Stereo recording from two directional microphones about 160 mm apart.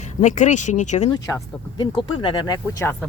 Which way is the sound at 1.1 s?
20° left (ahead or behind).